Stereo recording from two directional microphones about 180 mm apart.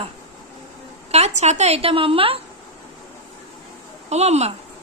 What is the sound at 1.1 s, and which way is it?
A woman's voice, 40° right (ahead or behind).